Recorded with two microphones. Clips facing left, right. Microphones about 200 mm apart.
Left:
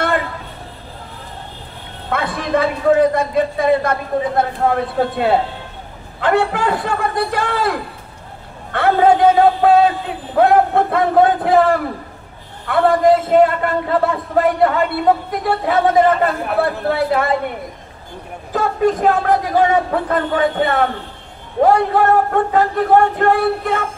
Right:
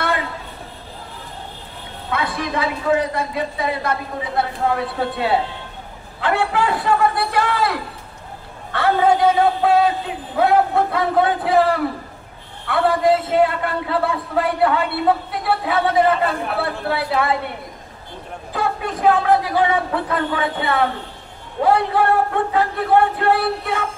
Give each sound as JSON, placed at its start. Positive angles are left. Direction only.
{"t": 2.0, "sound": "a man's voice", "side_deg": 55}
{"t": 18.5, "sound": "a man's voice", "side_deg": 45}